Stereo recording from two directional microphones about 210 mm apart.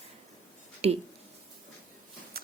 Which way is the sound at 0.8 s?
30° right (ahead or behind).